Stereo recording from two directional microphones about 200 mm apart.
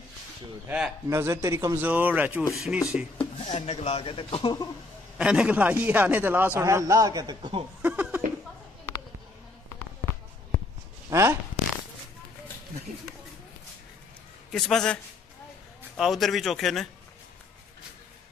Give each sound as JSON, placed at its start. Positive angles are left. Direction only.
{"t": 0.7, "sound": "a man's voice", "side_deg": -5}
{"t": 3.2, "sound": "speech", "side_deg": 30}
{"t": 5.1, "sound": "a man's voice", "side_deg": -5}
{"t": 7.8, "sound": "a sound", "side_deg": -10}
{"t": 11.1, "sound": "speech", "side_deg": -15}
{"t": 14.5, "sound": "speech", "side_deg": 0}
{"t": 16.0, "sound": "speech", "side_deg": 0}